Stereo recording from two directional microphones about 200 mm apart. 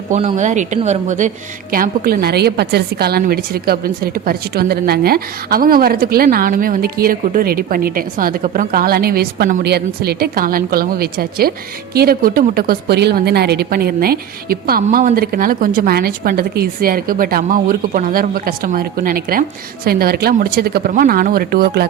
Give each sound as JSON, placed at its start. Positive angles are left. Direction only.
{"t": 0.1, "sound": "a woman's voice", "side_deg": -35}